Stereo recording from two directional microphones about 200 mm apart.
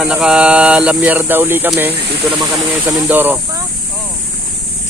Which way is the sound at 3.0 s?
10° right (ahead or behind).